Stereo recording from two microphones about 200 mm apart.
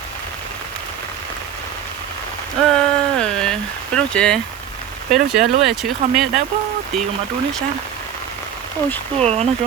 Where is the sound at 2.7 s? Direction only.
5° left (ahead or behind).